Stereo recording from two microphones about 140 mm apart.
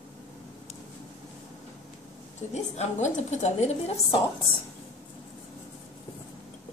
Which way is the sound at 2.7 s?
55° left (ahead or behind).